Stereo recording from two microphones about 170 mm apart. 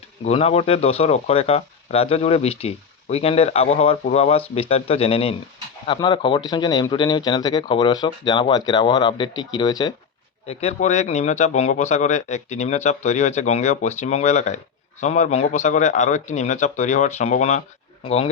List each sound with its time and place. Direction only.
0.3 s speech: 35° left (ahead or behind)
10.4 s a man's voice: 40° left (ahead or behind)